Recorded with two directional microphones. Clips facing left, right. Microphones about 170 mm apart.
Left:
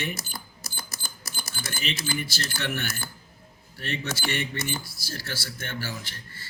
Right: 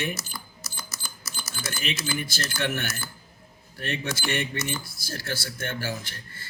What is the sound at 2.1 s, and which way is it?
A man's voice, 50° right (ahead or behind).